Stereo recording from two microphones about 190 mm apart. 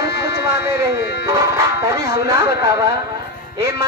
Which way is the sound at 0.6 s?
15° right (ahead or behind).